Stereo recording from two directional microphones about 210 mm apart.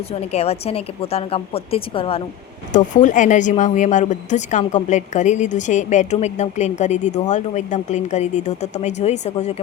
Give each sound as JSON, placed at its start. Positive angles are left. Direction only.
{"t": 0.1, "sound": "a woman's voice", "side_deg": 30}